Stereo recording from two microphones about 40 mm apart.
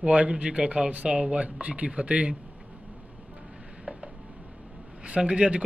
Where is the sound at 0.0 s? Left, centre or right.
Right.